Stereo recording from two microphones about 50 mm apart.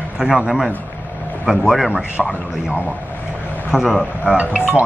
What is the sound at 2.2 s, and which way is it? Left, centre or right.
Speech, centre.